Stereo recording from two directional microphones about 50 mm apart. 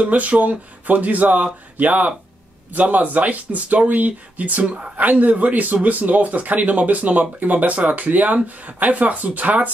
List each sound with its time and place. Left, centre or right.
0.0 s speech: right